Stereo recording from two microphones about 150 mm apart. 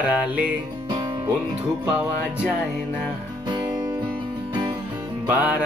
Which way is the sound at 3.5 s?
30° right (ahead or behind).